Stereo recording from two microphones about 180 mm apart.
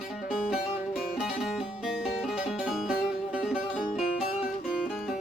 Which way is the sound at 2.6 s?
5° right (ahead or behind).